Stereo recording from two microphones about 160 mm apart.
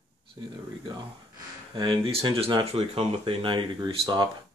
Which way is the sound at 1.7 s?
30° right (ahead or behind).